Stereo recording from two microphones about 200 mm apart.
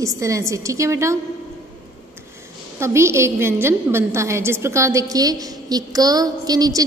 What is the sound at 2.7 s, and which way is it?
A woman's voice, 15° right (ahead or behind).